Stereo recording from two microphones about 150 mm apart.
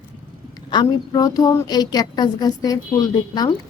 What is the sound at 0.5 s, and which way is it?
A woman's voice, 25° left (ahead or behind).